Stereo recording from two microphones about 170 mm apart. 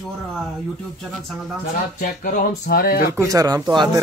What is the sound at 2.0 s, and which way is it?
Speech, 60° left (ahead or behind).